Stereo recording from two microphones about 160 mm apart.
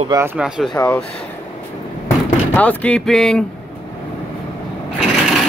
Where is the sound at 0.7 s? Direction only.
10° left (ahead or behind).